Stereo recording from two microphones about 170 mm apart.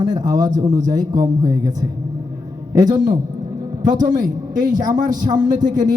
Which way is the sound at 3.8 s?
50° right (ahead or behind).